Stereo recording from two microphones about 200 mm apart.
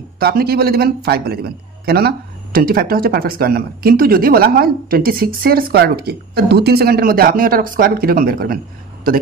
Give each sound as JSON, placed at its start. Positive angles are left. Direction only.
{"t": 0.2, "sound": "a man's voice", "side_deg": -50}